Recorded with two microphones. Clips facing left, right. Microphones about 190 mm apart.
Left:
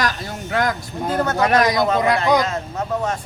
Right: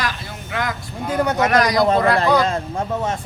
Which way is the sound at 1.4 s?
30° left (ahead or behind).